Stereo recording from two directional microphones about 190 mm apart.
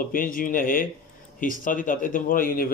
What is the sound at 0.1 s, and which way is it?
Speech, 45° left (ahead or behind).